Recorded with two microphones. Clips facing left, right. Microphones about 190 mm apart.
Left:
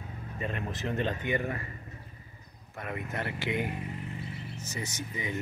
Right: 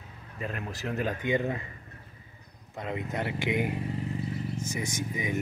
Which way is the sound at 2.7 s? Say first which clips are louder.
Right 3 dB; 20° right (ahead or behind).